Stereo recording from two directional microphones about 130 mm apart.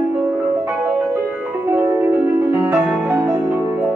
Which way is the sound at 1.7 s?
20° right (ahead or behind).